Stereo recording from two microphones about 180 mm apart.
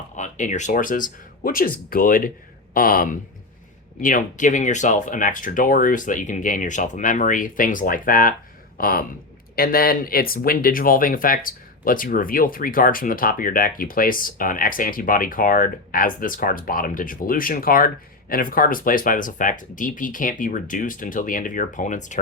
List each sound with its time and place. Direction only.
0.2 s speech: 45° left (ahead or behind)